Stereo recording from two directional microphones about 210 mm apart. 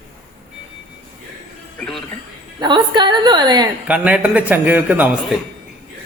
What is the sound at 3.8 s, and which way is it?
A man's voice, 5° right (ahead or behind).